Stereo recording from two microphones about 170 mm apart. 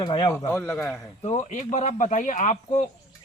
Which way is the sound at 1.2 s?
45° left (ahead or behind).